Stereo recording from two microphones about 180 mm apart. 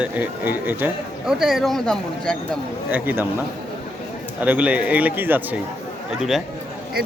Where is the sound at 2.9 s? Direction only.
10° right (ahead or behind).